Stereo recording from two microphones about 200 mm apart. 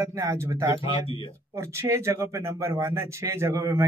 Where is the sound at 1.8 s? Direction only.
15° right (ahead or behind).